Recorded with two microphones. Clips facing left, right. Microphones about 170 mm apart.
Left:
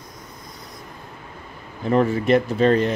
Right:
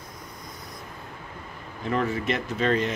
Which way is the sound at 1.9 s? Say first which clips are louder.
Left 9 dB; 35° left (ahead or behind).